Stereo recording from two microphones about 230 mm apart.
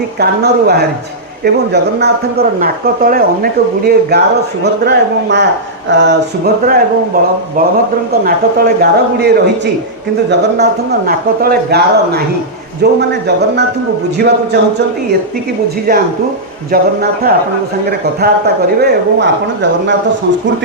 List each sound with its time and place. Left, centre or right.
0.2 s a man's voice: right
8.2 s a man's voice: right
15.9 s a man's voice: right